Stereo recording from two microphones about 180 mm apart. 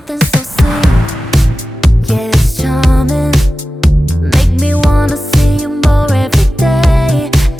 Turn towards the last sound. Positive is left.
turn(degrees=0)  # may be behind; listen again after turning